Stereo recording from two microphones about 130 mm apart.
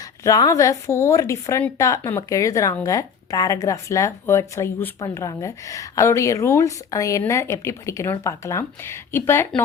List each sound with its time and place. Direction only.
0.3 s speech: 25° left (ahead or behind)